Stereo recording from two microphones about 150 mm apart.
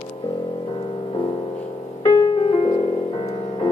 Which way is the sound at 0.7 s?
35° left (ahead or behind).